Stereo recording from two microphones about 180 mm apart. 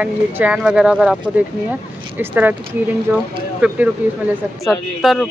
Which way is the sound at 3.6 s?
10° right (ahead or behind).